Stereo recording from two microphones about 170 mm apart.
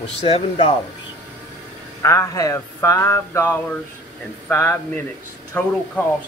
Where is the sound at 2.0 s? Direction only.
20° left (ahead or behind).